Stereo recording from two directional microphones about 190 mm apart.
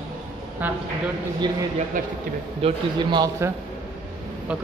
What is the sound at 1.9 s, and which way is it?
Speech, 45° right (ahead or behind).